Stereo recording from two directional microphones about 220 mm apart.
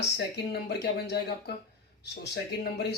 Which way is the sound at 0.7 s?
45° left (ahead or behind).